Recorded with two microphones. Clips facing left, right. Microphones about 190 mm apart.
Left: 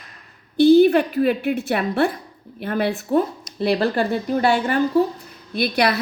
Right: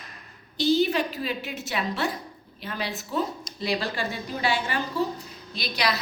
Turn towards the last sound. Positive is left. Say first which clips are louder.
# left 8 dB
turn(degrees=55)  # may be behind; listen again after turning